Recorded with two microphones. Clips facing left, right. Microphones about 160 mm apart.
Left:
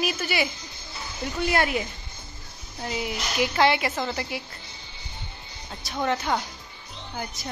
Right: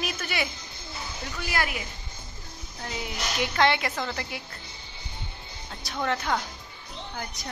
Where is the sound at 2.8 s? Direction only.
10° left (ahead or behind).